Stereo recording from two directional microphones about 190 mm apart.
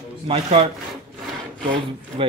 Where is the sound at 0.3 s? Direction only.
35° right (ahead or behind).